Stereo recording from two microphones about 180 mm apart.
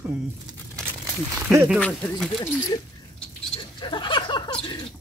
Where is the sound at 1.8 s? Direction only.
5° left (ahead or behind).